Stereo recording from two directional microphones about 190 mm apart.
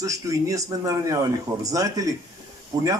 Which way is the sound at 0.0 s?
15° right (ahead or behind).